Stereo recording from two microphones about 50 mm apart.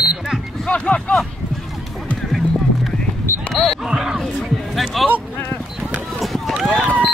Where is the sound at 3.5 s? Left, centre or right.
Centre.